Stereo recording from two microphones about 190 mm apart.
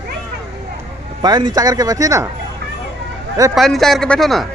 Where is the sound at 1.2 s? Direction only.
20° right (ahead or behind).